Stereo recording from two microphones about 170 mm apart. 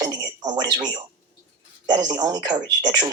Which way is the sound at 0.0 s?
25° right (ahead or behind).